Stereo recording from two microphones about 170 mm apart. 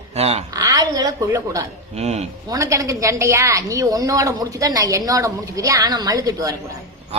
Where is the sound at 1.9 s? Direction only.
40° right (ahead or behind).